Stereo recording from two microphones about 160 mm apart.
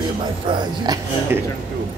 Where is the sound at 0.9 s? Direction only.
25° right (ahead or behind).